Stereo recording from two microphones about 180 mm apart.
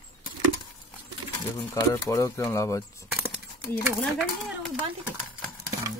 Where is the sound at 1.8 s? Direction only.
15° left (ahead or behind).